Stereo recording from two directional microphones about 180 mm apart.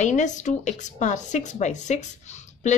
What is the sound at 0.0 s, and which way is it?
A woman's voice, 40° left (ahead or behind).